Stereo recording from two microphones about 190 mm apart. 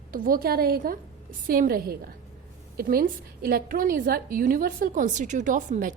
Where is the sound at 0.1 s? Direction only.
50° right (ahead or behind).